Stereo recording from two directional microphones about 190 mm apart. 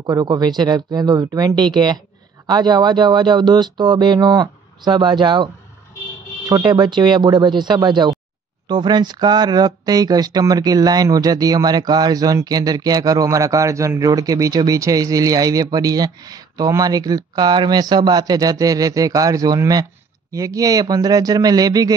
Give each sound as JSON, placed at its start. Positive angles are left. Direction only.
{"t": 0.0, "sound": "speech", "side_deg": -20}